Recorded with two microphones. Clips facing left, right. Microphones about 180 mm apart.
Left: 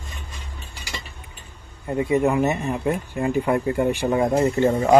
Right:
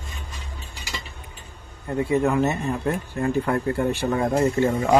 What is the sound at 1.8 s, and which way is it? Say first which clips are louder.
Speech: left 1 dB; 20° left (ahead or behind).